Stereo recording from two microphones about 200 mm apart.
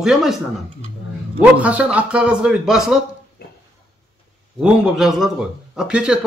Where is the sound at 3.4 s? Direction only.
50° left (ahead or behind).